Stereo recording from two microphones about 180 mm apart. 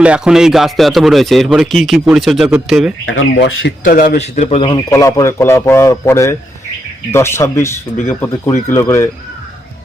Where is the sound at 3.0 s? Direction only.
90° left.